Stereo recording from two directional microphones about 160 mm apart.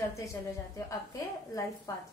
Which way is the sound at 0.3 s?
20° left (ahead or behind).